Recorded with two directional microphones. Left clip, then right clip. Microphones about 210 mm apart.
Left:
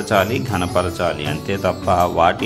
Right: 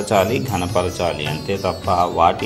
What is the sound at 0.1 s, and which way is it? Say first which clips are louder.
Speech: even; 10° left (ahead or behind).